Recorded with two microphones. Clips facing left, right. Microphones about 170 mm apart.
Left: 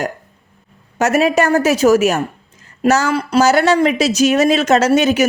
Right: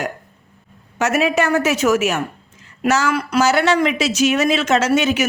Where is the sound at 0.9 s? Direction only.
40° left (ahead or behind).